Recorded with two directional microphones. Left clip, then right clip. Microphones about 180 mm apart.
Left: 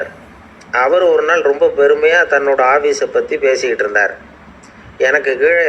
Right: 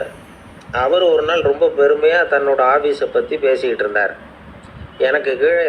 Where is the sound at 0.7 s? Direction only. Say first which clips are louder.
Left 3 dB; 10° left (ahead or behind).